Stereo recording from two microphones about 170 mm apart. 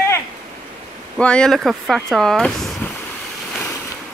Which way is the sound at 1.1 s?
5° left (ahead or behind).